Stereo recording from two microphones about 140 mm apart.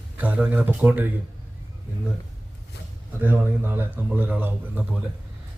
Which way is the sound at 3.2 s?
15° right (ahead or behind).